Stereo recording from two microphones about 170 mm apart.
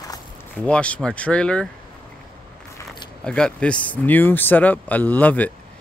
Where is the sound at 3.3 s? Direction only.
5° left (ahead or behind).